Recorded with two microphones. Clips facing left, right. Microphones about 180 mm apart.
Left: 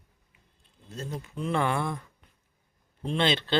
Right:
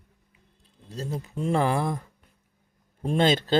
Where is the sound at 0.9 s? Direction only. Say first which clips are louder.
Right 4 dB; 35° right (ahead or behind).